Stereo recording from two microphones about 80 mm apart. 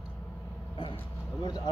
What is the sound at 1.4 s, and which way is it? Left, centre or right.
Speech, left.